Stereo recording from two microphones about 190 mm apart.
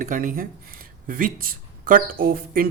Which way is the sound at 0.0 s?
45° right (ahead or behind).